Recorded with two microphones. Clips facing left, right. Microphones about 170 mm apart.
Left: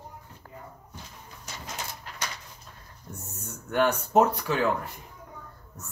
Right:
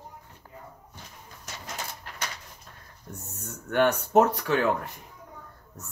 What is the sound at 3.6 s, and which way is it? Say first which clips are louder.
Speech: right 1 dB; 55° right (ahead or behind).